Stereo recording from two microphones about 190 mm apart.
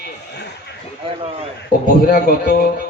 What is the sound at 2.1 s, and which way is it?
Speech, 50° left (ahead or behind).